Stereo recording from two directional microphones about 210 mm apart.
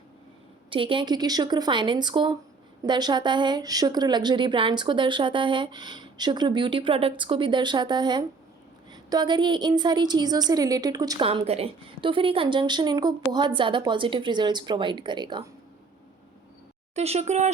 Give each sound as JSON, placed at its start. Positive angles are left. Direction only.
{"t": 0.7, "sound": "a woman's voice", "side_deg": -25}
{"t": 16.9, "sound": "speech", "side_deg": -30}